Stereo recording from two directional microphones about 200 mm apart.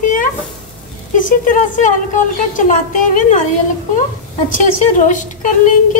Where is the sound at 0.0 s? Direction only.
40° left (ahead or behind).